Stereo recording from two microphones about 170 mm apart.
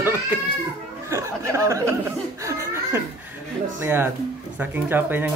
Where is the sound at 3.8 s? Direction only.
15° right (ahead or behind).